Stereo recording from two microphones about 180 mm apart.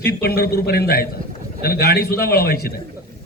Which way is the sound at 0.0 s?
60° left (ahead or behind).